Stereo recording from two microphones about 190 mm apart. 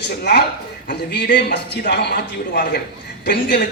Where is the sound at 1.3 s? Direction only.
60° left (ahead or behind).